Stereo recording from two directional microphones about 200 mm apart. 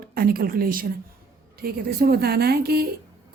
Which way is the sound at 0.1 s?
50° right (ahead or behind).